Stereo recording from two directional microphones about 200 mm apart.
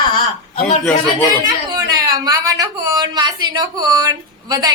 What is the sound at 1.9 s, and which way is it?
A woman's voice, 20° right (ahead or behind).